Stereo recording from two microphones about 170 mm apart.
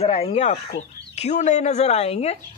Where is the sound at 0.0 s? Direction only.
35° left (ahead or behind).